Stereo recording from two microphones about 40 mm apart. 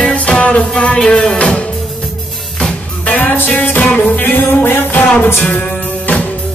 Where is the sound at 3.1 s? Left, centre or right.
Left.